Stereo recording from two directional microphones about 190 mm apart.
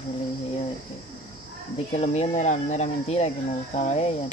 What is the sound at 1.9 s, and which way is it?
Speech, 35° left (ahead or behind).